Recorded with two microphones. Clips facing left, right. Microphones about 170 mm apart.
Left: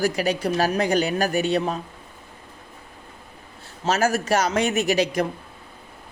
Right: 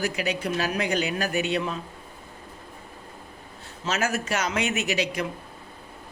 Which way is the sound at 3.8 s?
40° left (ahead or behind).